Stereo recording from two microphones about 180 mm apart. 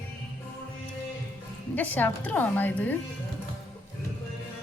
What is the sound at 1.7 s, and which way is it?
A woman's voice, 10° left (ahead or behind).